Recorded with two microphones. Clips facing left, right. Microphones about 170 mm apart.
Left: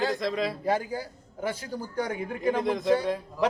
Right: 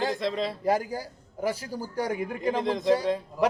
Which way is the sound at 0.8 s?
40° right (ahead or behind).